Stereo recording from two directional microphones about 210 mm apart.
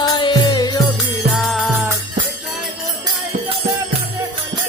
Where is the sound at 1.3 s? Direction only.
5° right (ahead or behind).